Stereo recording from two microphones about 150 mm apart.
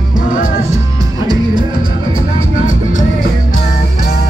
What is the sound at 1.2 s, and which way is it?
Music, 30° right (ahead or behind).